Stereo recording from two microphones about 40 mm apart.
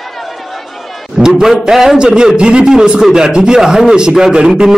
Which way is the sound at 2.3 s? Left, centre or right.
Right.